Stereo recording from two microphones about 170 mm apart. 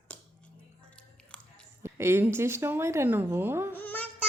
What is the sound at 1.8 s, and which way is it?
A woman's voice, 15° right (ahead or behind).